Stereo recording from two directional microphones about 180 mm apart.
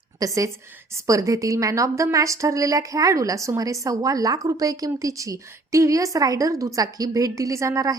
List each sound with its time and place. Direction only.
0.2 s a woman's voice: 15° right (ahead or behind)